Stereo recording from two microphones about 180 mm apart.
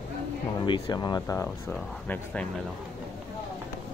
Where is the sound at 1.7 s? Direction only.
5° left (ahead or behind).